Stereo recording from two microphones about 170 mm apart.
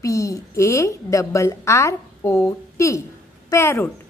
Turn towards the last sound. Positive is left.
turn(degrees=15)  # may be behind; listen again after turning